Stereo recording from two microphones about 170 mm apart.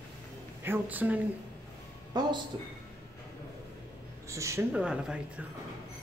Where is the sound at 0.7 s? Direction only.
10° right (ahead or behind).